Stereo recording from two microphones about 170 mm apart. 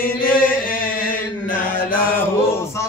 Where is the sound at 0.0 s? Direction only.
55° left (ahead or behind).